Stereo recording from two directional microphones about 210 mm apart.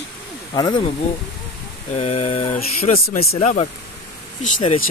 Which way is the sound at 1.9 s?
30° left (ahead or behind).